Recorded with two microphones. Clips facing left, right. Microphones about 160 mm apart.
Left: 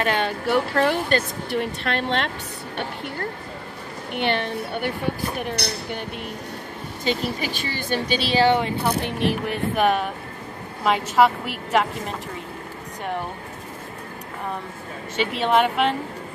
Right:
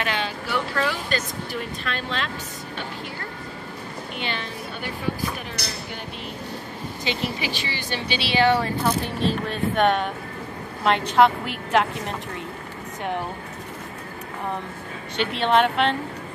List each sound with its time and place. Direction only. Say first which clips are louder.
0.0 s speech: left 5 dB; 50° left (ahead or behind)
4.1 s speech: left 9 dB; 60° left (ahead or behind)
7.1 s speech: left 3 dB; 45° left (ahead or behind)
8.4 s a woman's voice: even; 25° left (ahead or behind); by 12.2 s centre (ahead or behind)
15.1 s a woman's voice: even; 5° left (ahead or behind)